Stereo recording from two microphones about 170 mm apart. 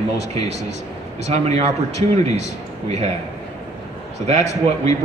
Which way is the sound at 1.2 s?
40° right (ahead or behind).